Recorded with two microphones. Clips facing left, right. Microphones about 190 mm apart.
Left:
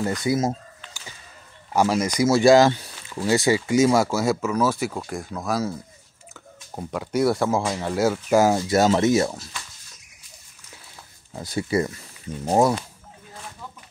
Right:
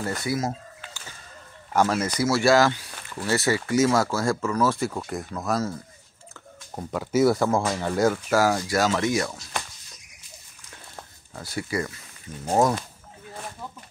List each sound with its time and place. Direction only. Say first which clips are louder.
0.2 s speech: left 5 dB; 20° left (ahead or behind)
1.7 s speech: left 2 dB; 10° left (ahead or behind)
8.3 s speech: left 4 dB; 20° left (ahead or behind)
11.3 s speech: left 5 dB; 20° left (ahead or behind)
12.4 s speech: left 2 dB; 10° left (ahead or behind)